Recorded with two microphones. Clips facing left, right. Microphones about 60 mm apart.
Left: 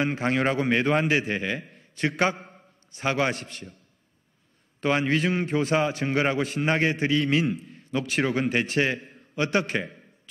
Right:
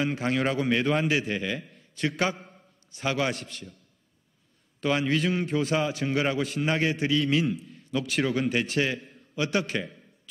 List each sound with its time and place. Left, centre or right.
0.0 s a man's voice: left
2.3 s a sound: left
3.3 s a man's voice: left
4.7 s a man's voice: left
5.5 s speech: left
5.8 s a man's voice: left
7.5 s a sound: left
8.1 s speech: left
8.4 s a man's voice: left